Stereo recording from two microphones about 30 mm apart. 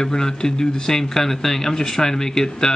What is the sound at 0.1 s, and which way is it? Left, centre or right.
Speech, left.